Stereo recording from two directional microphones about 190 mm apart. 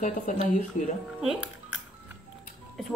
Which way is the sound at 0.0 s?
40° left (ahead or behind).